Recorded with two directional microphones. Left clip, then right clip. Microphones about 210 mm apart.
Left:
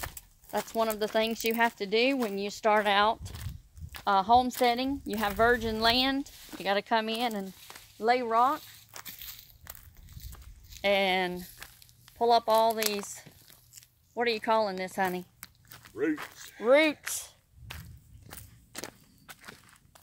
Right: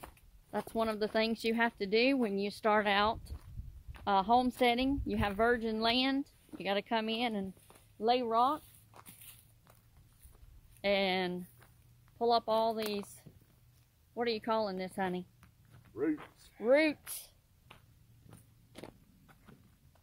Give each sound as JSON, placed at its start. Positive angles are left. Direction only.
{"t": 0.0, "sound": "speech", "side_deg": 0}
{"t": 7.6, "sound": "walk", "side_deg": 5}
{"t": 10.8, "sound": "speech", "side_deg": 0}
{"t": 14.1, "sound": "speech", "side_deg": 0}
{"t": 15.9, "sound": "speech", "side_deg": -20}
{"t": 16.7, "sound": "a sound", "side_deg": 5}
{"t": 18.3, "sound": "walk", "side_deg": 10}